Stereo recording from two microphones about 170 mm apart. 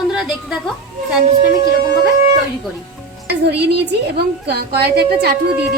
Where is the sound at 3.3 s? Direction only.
80° right.